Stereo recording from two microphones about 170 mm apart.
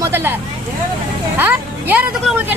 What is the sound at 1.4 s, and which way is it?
Music, 10° right (ahead or behind).